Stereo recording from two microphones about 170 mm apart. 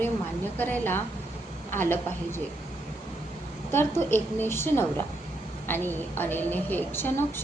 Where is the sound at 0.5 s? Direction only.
10° left (ahead or behind).